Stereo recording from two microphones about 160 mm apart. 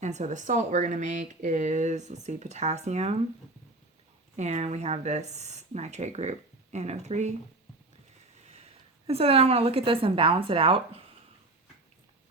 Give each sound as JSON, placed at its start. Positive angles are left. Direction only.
{"t": 0.0, "sound": "speech", "side_deg": -45}
{"t": 4.4, "sound": "speech", "side_deg": -45}
{"t": 8.4, "sound": "a woman's voice", "side_deg": -40}